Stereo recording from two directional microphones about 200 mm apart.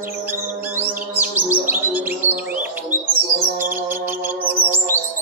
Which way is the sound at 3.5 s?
10° right (ahead or behind).